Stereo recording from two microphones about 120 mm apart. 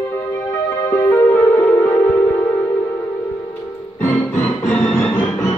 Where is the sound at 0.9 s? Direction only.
15° left (ahead or behind).